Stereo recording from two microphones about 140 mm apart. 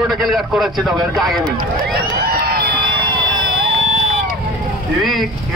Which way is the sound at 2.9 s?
35° right (ahead or behind).